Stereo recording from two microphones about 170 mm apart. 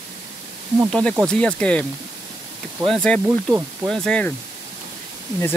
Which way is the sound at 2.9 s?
5° left (ahead or behind).